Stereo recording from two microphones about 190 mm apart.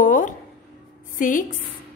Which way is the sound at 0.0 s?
45° left (ahead or behind).